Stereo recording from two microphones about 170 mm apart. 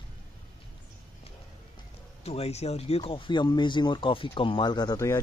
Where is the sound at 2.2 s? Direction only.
40° left (ahead or behind); by 5.1 s 20° left (ahead or behind).